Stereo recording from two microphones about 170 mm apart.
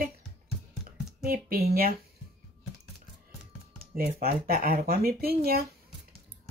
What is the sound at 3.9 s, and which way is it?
Speech, 60° right (ahead or behind).